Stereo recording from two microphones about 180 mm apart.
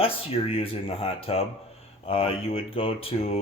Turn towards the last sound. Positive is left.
turn(degrees=35)  # may be behind; listen again after turning